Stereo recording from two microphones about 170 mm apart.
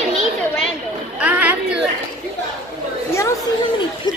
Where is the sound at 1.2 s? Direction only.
10° right (ahead or behind).